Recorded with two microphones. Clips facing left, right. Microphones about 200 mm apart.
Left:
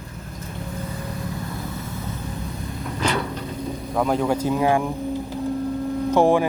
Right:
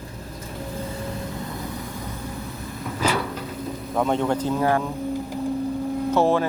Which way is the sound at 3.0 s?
5° right (ahead or behind).